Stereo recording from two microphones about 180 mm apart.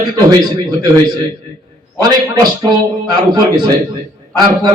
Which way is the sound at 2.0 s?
25° right (ahead or behind).